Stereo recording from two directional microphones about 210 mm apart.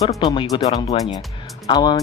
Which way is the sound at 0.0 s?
20° left (ahead or behind).